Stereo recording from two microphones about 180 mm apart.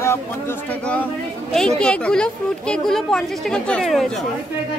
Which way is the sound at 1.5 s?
5° left (ahead or behind).